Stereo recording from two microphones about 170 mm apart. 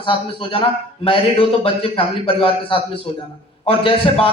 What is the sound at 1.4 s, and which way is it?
A man's voice, 35° left (ahead or behind).